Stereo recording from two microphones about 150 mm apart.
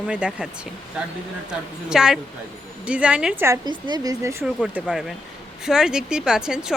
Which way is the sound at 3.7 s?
30° right (ahead or behind).